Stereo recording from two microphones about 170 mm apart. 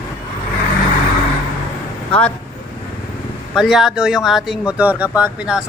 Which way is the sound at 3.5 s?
Centre (ahead or behind).